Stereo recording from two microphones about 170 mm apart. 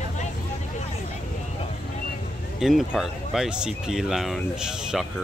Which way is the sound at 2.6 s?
5° right (ahead or behind).